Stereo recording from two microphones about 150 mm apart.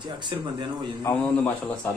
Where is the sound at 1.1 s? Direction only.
15° left (ahead or behind).